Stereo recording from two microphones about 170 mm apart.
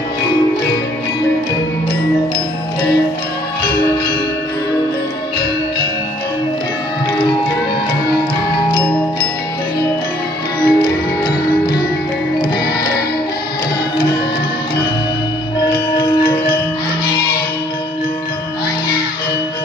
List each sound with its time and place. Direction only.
10.6 s music: 25° left (ahead or behind)